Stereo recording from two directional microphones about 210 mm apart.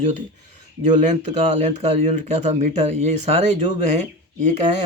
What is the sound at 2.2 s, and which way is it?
Speech, 35° right (ahead or behind).